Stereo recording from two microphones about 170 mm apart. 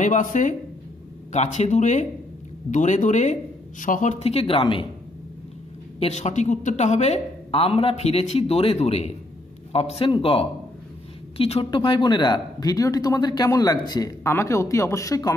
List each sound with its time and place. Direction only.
0.0 s speech: 45° left (ahead or behind)
5.9 s speech: 40° left (ahead or behind); by 15.3 s 20° left (ahead or behind)